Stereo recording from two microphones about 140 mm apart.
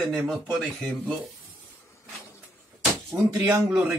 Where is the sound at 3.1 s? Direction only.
20° right (ahead or behind).